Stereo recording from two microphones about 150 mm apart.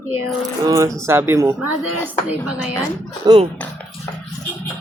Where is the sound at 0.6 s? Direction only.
20° right (ahead or behind).